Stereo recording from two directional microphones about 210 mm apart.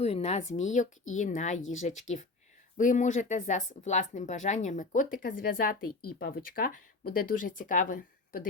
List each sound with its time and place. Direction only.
0.0 s speech: 30° left (ahead or behind)
1.5 s speech: 70° left (ahead or behind)
2.7 s speech: 35° left (ahead or behind)
5.9 s speech: 90° left
6.1 s speech: 50° left (ahead or behind)